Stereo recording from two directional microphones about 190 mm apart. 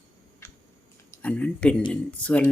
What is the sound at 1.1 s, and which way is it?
Speech, 10° left (ahead or behind).